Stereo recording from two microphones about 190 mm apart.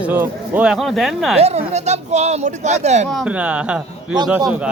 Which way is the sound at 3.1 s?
5° right (ahead or behind).